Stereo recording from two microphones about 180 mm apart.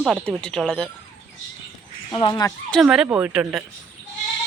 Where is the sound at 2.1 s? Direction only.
25° left (ahead or behind).